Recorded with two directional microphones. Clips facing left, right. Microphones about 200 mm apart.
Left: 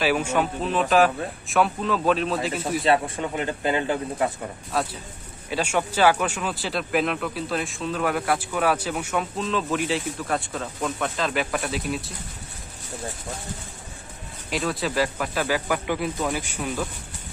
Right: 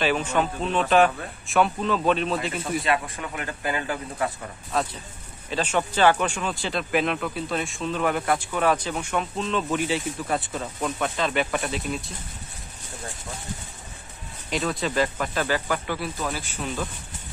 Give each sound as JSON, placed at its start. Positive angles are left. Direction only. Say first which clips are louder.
{"t": 0.0, "sound": "speech", "louder": "left 1 dB", "side_deg": 10}
{"t": 2.8, "sound": "speech", "louder": "left 4 dB", "side_deg": 25}
{"t": 5.5, "sound": "speech", "louder": "even", "side_deg": 10}
{"t": 14.5, "sound": "speech", "louder": "even", "side_deg": 0}